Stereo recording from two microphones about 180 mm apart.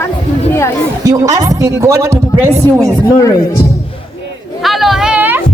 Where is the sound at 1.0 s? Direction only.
20° right (ahead or behind).